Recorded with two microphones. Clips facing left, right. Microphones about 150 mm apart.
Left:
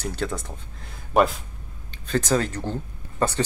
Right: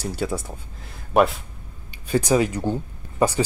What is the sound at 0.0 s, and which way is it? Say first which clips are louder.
Speech: right 2 dB; 10° right (ahead or behind).